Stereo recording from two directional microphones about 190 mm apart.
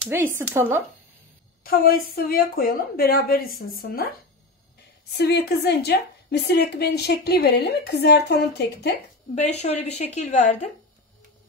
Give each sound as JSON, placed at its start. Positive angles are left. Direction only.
{"t": 0.0, "sound": "speech", "side_deg": -10}
{"t": 1.6, "sound": "a woman's voice", "side_deg": 50}
{"t": 5.1, "sound": "a woman's voice", "side_deg": 60}
{"t": 9.3, "sound": "a woman's voice", "side_deg": 35}